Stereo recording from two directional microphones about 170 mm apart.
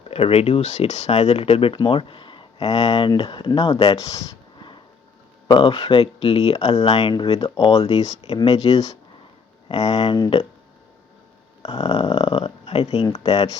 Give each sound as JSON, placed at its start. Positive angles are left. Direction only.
{"t": 0.1, "sound": "speech", "side_deg": 35}
{"t": 3.9, "sound": "a sound", "side_deg": 20}
{"t": 5.5, "sound": "speech", "side_deg": 30}
{"t": 11.6, "sound": "speech", "side_deg": 35}